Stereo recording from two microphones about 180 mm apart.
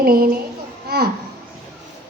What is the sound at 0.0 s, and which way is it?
Speech, 55° right (ahead or behind).